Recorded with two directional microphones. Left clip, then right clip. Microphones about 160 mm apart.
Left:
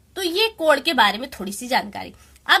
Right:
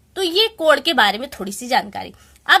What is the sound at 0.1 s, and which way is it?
A woman's voice, 25° right (ahead or behind).